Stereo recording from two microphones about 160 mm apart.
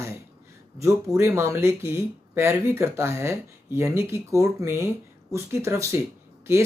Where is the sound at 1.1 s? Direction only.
20° right (ahead or behind).